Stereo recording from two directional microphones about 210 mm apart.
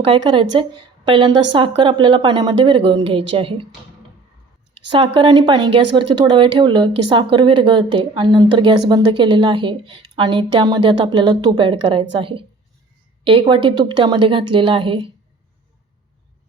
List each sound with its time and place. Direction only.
0.0 s speech: 20° right (ahead or behind)
4.9 s speech: 25° right (ahead or behind)